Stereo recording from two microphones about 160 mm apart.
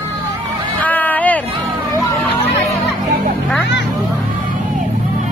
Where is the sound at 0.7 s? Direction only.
10° left (ahead or behind).